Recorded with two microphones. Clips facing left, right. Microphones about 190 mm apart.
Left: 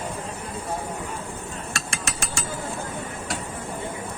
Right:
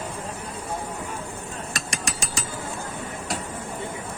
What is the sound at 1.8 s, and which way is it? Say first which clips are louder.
Mechanisms: right 2 dB; 15° right (ahead or behind).